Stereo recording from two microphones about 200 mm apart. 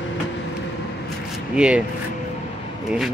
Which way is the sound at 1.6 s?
5° right (ahead or behind).